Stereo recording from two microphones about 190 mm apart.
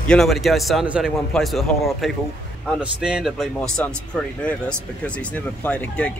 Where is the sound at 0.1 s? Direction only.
Centre (ahead or behind).